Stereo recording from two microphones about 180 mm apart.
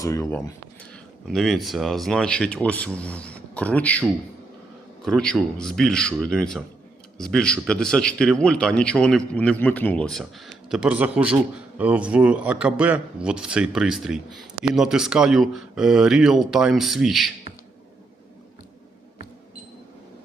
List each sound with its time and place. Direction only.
0.0 s speech: 15° left (ahead or behind)
1.3 s speech: centre (ahead or behind)
5.0 s a man's voice: 5° left (ahead or behind)